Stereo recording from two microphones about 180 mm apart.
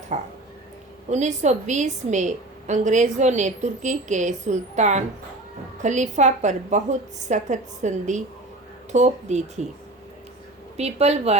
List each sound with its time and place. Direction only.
0.1 s a woman's voice: 40° right (ahead or behind)
10.8 s a woman's voice: 35° right (ahead or behind)